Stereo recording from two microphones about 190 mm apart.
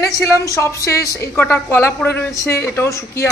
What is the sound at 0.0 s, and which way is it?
A woman's voice, 15° left (ahead or behind).